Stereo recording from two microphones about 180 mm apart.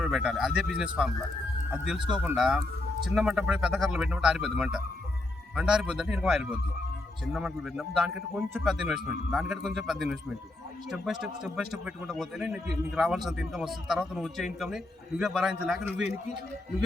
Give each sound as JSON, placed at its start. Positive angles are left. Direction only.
{"t": 0.0, "sound": "speech", "side_deg": -5}
{"t": 2.2, "sound": "a man's voice", "side_deg": -5}